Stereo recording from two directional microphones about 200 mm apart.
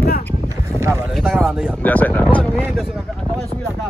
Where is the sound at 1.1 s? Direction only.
5° right (ahead or behind).